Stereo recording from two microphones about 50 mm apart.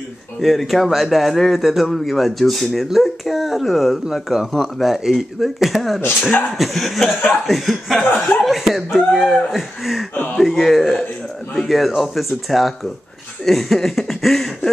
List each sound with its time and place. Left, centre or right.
0.4 s a man's voice: centre
8.0 s speech: left
8.5 s a man's voice: centre